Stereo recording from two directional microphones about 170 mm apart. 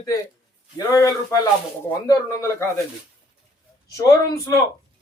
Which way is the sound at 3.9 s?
20° left (ahead or behind).